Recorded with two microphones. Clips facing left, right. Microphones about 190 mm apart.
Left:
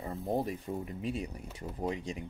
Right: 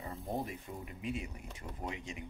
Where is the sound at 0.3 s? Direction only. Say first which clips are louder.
Left 7 dB; 35° left (ahead or behind).